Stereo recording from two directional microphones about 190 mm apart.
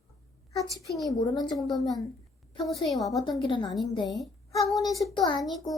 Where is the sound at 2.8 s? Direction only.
Centre (ahead or behind).